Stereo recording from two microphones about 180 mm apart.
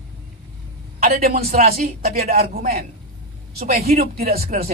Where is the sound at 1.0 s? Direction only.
55° right (ahead or behind).